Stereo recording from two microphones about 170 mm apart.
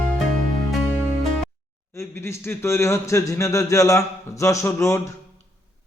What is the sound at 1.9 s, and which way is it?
A man's voice, 15° left (ahead or behind).